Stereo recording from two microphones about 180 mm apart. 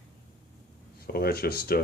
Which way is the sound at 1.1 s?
55° left (ahead or behind).